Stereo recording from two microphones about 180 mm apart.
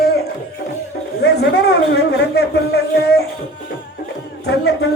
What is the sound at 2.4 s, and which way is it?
Music, 60° left (ahead or behind).